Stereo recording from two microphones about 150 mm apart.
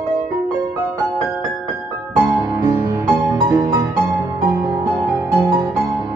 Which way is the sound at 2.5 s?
20° right (ahead or behind).